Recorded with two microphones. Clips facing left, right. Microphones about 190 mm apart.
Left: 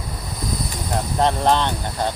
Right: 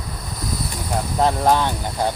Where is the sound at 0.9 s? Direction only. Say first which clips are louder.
Even; 5° right (ahead or behind).